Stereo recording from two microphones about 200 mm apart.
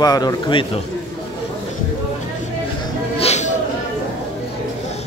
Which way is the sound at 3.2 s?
35° left (ahead or behind).